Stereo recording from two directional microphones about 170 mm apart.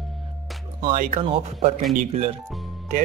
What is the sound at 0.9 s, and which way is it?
Speech, 50° right (ahead or behind).